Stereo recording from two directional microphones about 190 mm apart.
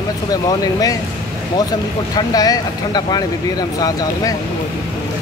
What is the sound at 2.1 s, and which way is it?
Speech, 20° left (ahead or behind).